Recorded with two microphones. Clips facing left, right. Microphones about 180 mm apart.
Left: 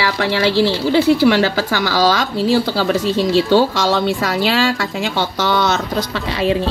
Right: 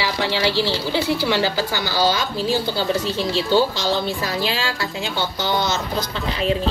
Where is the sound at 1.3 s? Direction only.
90° left; by 5.8 s 70° left (ahead or behind).